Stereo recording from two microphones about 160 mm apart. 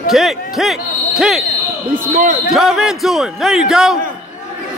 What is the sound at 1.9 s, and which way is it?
Speech, 55° right (ahead or behind).